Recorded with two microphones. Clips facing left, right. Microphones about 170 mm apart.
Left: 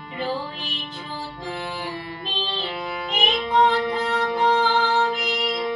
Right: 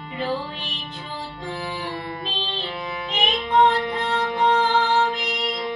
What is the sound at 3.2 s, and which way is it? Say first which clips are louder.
Music: right 1 dB; centre (ahead or behind).